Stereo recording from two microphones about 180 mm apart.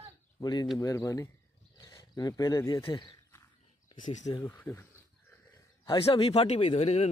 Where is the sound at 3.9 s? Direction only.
45° left (ahead or behind).